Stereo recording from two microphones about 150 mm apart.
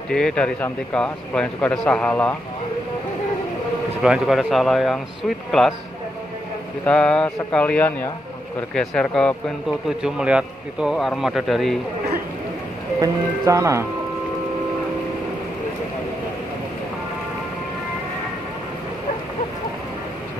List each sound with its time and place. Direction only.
0.1 s speech: 5° left (ahead or behind)
4.0 s a man's voice: 5° right (ahead or behind)
6.8 s a man's voice: 5° left (ahead or behind)
13.0 s speech: 20° right (ahead or behind)